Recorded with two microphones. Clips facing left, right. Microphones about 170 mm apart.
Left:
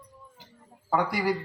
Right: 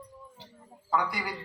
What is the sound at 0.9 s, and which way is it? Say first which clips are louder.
Speech: left 5 dB; 60° left (ahead or behind).